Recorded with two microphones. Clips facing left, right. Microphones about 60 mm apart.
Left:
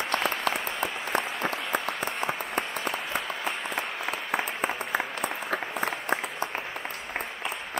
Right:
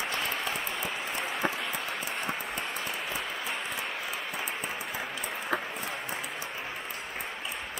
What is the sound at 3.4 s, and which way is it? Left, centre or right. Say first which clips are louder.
Applause: left 3 dB; left.